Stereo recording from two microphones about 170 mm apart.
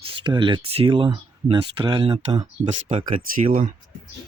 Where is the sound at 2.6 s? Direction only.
40° right (ahead or behind).